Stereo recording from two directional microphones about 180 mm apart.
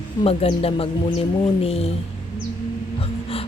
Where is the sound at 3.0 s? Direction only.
30° left (ahead or behind).